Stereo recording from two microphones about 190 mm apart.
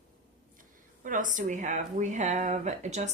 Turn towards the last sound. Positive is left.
turn(degrees=-35)  # may be behind; listen again after turning